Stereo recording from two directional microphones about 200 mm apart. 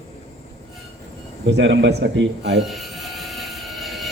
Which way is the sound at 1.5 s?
60° right (ahead or behind).